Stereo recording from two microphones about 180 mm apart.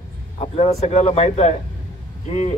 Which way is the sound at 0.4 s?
35° left (ahead or behind).